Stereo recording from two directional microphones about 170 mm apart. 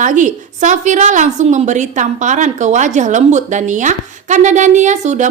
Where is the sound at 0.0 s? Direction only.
50° right (ahead or behind).